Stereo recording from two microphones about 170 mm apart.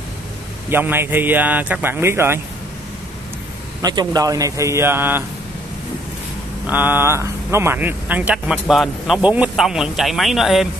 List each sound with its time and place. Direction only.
0.7 s speech: 15° right (ahead or behind)
3.8 s a man's voice: 25° right (ahead or behind)
6.7 s speech: 10° right (ahead or behind)